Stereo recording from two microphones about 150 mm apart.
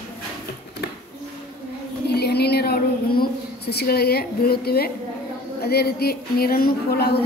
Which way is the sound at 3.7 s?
90° left.